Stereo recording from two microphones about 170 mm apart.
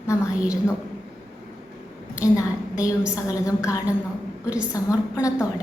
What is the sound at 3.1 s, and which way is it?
A woman's voice, 20° left (ahead or behind).